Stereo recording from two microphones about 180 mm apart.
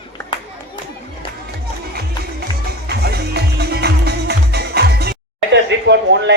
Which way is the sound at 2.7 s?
60° right (ahead or behind).